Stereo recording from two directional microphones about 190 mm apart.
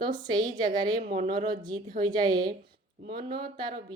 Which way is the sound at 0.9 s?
45° right (ahead or behind).